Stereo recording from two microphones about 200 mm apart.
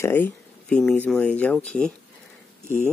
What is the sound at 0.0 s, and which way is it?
Speech, 10° left (ahead or behind).